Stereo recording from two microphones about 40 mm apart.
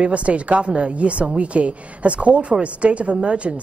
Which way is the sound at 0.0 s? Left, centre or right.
Right.